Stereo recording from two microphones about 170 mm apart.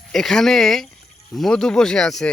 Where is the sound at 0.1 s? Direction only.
Centre (ahead or behind).